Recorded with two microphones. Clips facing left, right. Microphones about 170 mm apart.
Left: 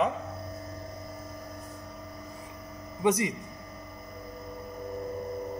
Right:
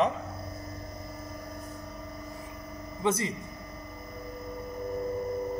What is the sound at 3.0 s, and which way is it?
Speech, 15° left (ahead or behind).